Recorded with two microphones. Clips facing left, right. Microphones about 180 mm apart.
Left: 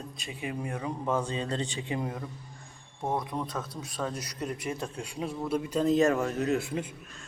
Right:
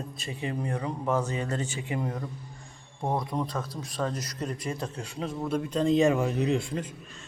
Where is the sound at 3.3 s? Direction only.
Centre (ahead or behind).